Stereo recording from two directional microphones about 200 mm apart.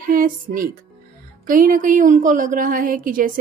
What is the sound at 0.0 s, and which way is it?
Speech, 45° right (ahead or behind).